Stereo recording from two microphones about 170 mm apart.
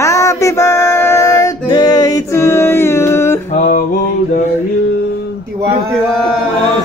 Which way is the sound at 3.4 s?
45° left (ahead or behind).